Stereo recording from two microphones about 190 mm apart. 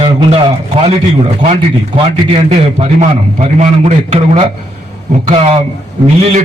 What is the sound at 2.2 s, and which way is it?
Speech, 30° right (ahead or behind).